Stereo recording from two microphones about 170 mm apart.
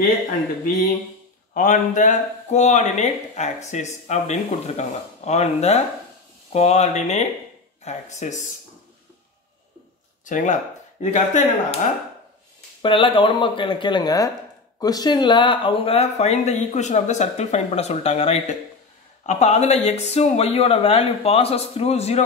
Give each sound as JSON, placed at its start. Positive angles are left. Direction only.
{"t": 1.5, "sound": "speech", "side_deg": 50}
{"t": 10.2, "sound": "speech", "side_deg": 45}
{"t": 12.8, "sound": "speech", "side_deg": 30}